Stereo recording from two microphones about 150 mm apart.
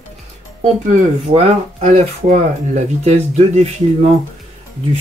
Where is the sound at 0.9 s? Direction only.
50° right (ahead or behind).